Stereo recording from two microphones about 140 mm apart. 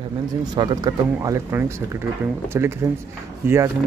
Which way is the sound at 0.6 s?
30° right (ahead or behind).